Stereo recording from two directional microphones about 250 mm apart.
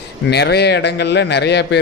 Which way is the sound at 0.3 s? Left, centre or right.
Left.